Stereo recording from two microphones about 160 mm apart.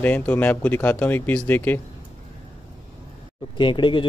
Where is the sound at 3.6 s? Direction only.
30° left (ahead or behind).